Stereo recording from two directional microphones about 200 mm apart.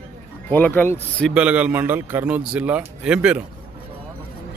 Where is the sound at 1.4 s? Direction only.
5° right (ahead or behind).